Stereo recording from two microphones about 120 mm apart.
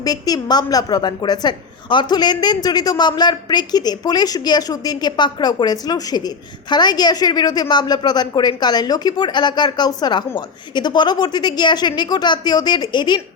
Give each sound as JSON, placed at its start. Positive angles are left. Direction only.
{"t": 0.0, "sound": "a woman's voice", "side_deg": 35}